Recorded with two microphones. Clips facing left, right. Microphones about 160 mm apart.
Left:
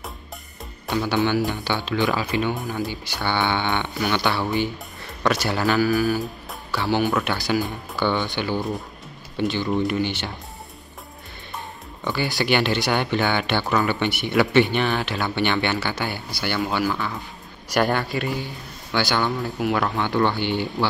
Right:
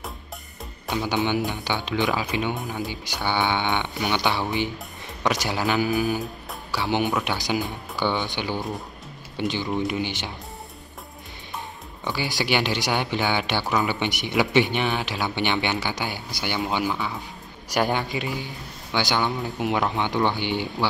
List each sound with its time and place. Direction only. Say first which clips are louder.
0.9 s speech: left 3 dB; 15° right (ahead or behind)
12.0 s speech: left 3 dB; 15° right (ahead or behind)